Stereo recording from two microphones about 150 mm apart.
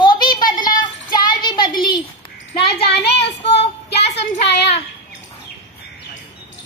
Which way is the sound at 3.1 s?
90° left.